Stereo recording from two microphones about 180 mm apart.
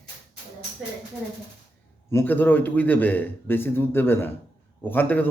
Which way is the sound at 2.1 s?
10° left (ahead or behind).